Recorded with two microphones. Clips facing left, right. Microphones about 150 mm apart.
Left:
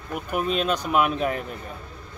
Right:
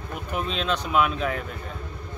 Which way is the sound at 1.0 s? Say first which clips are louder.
Left 2 dB; 50° left (ahead or behind).